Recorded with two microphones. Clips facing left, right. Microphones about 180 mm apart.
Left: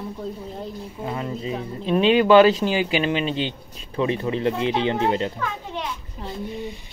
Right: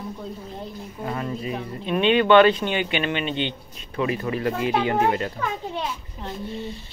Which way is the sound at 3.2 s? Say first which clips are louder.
Left 1 dB; 35° left (ahead or behind).